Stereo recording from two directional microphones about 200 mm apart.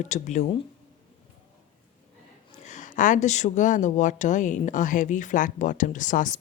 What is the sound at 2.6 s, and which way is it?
Speech, 40° left (ahead or behind).